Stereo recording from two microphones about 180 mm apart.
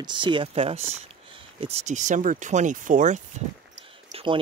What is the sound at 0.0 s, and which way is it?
Speech, 25° right (ahead or behind).